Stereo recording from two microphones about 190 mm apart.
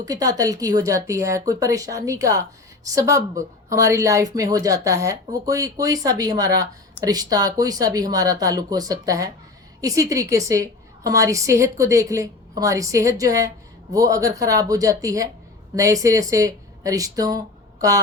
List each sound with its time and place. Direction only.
0.0 s speech: 20° right (ahead or behind)